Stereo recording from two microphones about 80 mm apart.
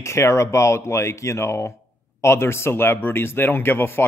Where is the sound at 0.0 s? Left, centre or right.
Left.